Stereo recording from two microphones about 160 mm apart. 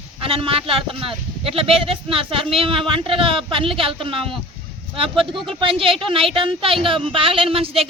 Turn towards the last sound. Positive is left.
turn(degrees=-35)  # may be behind; listen again after turning